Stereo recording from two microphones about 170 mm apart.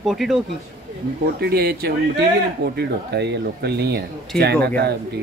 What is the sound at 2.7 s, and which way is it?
Speech, 80° right.